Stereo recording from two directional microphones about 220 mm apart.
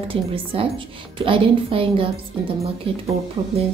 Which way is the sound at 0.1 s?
25° right (ahead or behind).